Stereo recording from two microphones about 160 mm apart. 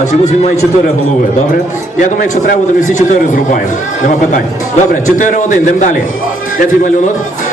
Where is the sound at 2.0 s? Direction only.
50° left (ahead or behind).